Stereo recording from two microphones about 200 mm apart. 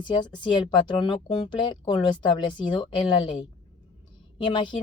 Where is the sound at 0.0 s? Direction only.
20° left (ahead or behind).